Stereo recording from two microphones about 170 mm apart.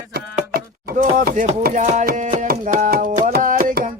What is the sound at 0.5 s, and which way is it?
Chopping, 60° right (ahead or behind).